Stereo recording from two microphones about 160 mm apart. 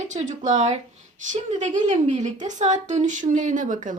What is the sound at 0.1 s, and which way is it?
A woman's voice, 50° right (ahead or behind).